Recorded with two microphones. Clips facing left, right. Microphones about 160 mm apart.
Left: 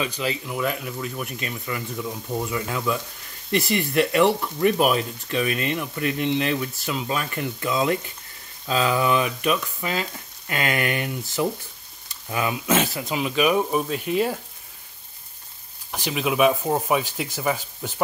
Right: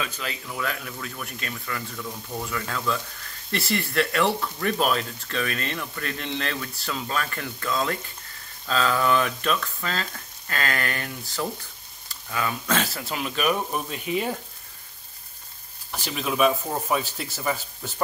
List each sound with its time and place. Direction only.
0.0 s speech: 5° left (ahead or behind)
13.0 s speech: 5° left (ahead or behind)
15.9 s speech: 10° left (ahead or behind)